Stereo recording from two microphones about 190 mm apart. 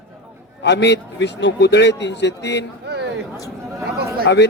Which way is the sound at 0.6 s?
65° left (ahead or behind).